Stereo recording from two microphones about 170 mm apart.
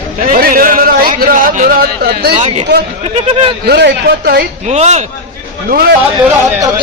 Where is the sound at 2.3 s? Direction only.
40° right (ahead or behind).